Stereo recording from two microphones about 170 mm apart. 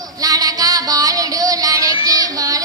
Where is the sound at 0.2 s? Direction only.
20° right (ahead or behind).